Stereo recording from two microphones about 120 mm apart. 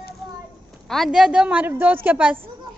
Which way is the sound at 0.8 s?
Centre (ahead or behind).